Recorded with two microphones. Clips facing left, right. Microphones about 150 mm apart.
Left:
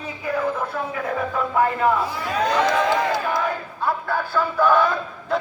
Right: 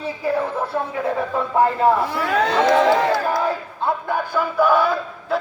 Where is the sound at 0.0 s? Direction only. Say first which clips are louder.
Right 2 dB; 30° right (ahead or behind).